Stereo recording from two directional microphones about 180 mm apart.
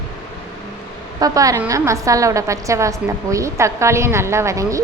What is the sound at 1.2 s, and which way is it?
A woman's voice, 20° right (ahead or behind).